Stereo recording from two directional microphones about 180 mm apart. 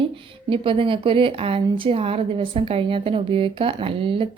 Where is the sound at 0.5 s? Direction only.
30° right (ahead or behind).